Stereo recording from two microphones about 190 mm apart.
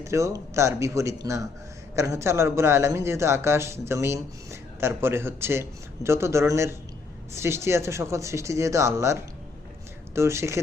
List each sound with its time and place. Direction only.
0.0 s a man's voice: 15° right (ahead or behind)
10.2 s a man's voice: 15° right (ahead or behind)